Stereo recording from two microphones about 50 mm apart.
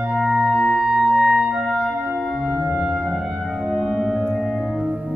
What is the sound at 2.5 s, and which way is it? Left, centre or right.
Music, right.